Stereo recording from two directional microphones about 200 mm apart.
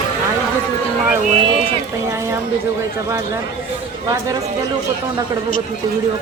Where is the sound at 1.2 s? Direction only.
35° right (ahead or behind).